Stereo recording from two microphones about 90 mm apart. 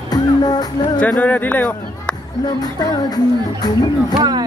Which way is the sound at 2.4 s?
45° left (ahead or behind).